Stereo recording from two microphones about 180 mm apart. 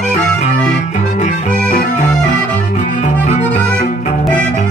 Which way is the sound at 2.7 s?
45° left (ahead or behind).